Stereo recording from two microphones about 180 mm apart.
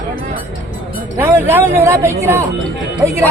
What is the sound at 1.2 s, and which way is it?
Speech, 10° right (ahead or behind).